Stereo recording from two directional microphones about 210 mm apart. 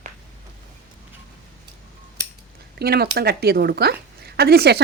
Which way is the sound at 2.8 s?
50° right (ahead or behind).